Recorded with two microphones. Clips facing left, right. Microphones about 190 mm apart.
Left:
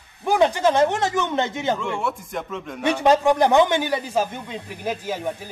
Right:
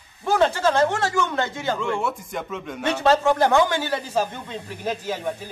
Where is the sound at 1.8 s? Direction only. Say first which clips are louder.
Right 1 dB; centre (ahead or behind).